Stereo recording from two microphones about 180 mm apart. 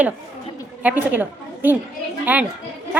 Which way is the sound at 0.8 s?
10° right (ahead or behind).